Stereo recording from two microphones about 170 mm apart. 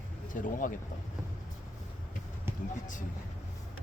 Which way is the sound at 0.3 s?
50° left (ahead or behind).